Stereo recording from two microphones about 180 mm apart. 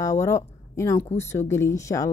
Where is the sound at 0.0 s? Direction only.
15° left (ahead or behind).